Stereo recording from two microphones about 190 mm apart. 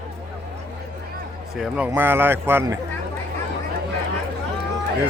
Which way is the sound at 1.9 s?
10° right (ahead or behind).